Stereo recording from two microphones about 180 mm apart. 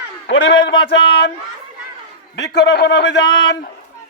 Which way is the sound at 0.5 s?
25° left (ahead or behind).